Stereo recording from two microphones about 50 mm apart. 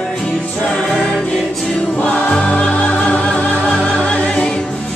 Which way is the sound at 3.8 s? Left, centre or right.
Centre.